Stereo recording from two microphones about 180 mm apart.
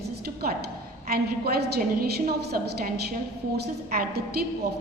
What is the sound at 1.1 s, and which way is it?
A woman's voice, 60° right (ahead or behind).